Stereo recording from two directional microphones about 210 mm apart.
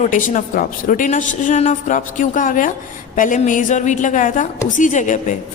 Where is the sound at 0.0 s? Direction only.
40° left (ahead or behind).